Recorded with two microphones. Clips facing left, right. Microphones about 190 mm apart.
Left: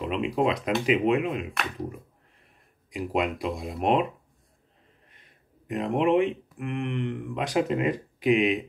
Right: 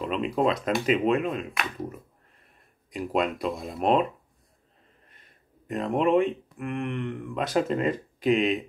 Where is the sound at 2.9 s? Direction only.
15° left (ahead or behind).